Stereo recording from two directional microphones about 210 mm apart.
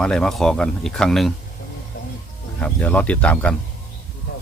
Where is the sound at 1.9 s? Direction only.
60° left (ahead or behind).